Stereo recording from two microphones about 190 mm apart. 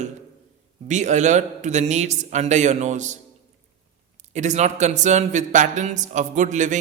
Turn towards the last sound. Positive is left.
turn(degrees=-40)  # may be behind; listen again after turning